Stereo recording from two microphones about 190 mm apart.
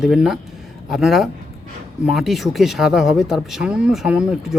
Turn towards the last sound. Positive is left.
turn(degrees=-5)  # may be behind; listen again after turning